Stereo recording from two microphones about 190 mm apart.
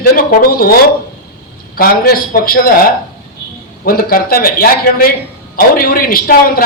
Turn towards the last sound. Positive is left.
turn(degrees=50)  # may be behind; listen again after turning